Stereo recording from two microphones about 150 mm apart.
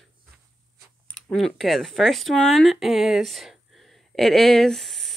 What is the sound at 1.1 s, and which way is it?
Speech, 5° left (ahead or behind).